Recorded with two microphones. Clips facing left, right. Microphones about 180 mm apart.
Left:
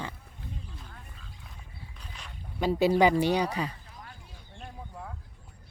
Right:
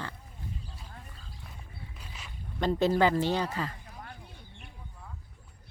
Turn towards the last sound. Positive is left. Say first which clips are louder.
# left 3 dB
turn(degrees=15)  # may be behind; listen again after turning